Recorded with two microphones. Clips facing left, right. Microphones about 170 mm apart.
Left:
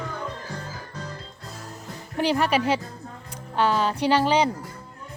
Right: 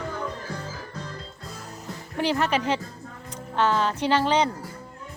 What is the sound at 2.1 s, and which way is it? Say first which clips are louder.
Speech: left 2 dB; 15° left (ahead or behind).